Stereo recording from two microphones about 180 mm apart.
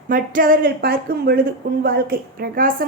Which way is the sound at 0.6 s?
60° right (ahead or behind).